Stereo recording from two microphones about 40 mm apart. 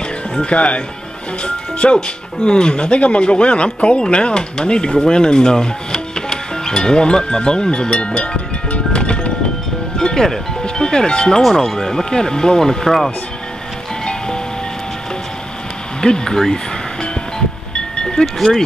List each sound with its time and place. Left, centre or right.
0.3 s speech: left
9.9 s music: centre
10.6 s speech: centre
11.4 s speech: centre
14.0 s music: centre
16.0 s speech: centre
17.7 s wind chime: left